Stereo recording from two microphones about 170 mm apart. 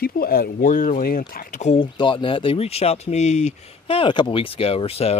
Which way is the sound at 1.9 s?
30° left (ahead or behind).